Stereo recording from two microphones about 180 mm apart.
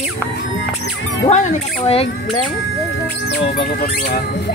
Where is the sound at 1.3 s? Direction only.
35° left (ahead or behind).